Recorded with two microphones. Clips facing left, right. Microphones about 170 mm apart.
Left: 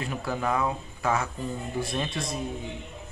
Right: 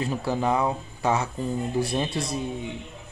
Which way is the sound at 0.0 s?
30° right (ahead or behind).